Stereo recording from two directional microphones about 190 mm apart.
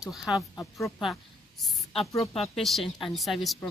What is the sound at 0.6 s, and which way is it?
Speech, 15° left (ahead or behind).